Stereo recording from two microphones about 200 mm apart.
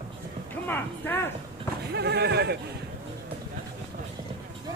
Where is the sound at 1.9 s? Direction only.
55° right (ahead or behind).